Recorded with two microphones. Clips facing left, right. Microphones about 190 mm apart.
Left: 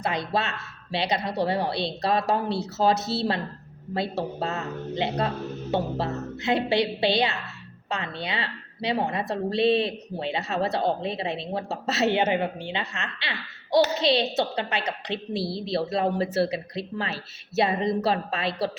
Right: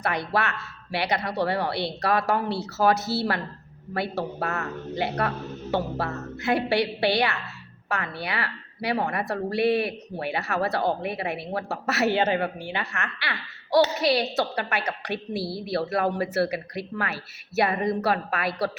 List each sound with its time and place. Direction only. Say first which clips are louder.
0.0 s a woman's voice: right 1 dB; 20° left (ahead or behind)